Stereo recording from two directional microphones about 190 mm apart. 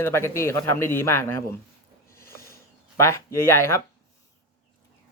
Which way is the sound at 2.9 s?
15° left (ahead or behind).